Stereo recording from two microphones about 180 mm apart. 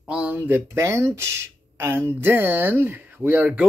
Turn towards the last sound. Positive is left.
turn(degrees=-10)  # may be behind; listen again after turning